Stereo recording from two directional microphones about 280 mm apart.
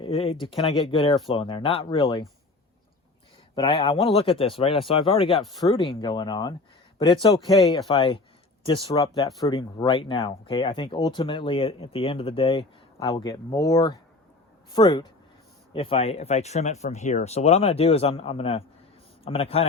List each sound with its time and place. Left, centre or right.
0.0 s speech: centre
3.5 s speech: centre